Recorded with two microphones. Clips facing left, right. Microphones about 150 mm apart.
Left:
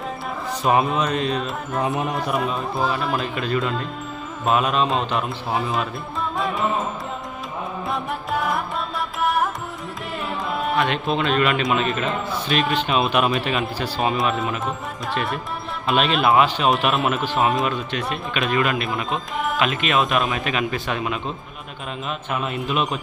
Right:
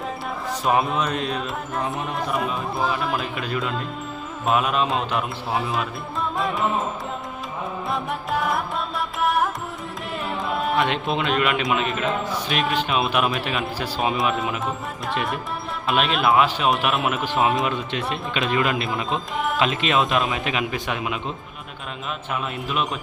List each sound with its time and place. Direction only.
0.6 s speech: centre (ahead or behind)
6.3 s music: centre (ahead or behind)
7.9 s music: centre (ahead or behind)
11.1 s speech: 15° right (ahead or behind)
11.4 s speech: 5° right (ahead or behind)
17.7 s speech: 25° right (ahead or behind)
19.1 s speech: centre (ahead or behind)
19.5 s speech: 25° right (ahead or behind)
22.3 s speech: centre (ahead or behind)